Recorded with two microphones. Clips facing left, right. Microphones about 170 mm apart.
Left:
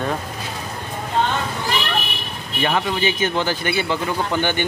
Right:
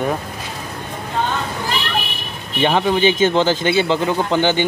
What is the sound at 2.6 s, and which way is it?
A man's voice, 25° right (ahead or behind).